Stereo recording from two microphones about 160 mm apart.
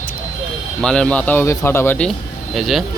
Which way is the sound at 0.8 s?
5° left (ahead or behind).